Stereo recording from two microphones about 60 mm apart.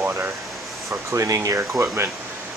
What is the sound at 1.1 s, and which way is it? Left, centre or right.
Speech, right.